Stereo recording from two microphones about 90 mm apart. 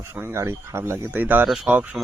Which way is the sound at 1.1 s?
20° right (ahead or behind).